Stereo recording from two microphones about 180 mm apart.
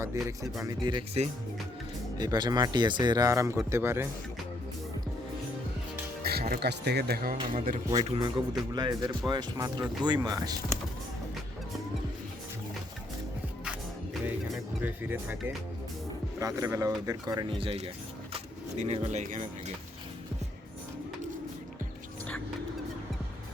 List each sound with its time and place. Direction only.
0.0 s speech: 15° right (ahead or behind)
6.2 s speech: 60° right (ahead or behind)
8.0 s speech: 30° right (ahead or behind)
13.7 s music: 5° right (ahead or behind)
16.4 s speech: 20° right (ahead or behind); by 19.7 s 45° right (ahead or behind)